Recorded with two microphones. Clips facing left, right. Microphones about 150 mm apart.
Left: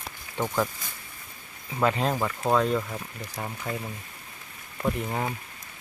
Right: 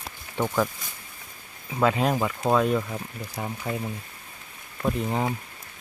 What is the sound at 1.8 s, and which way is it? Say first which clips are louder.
Speech: right 2 dB; 10° right (ahead or behind).